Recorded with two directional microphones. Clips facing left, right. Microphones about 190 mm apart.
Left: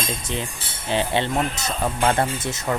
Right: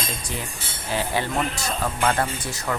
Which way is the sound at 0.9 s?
25° left (ahead or behind).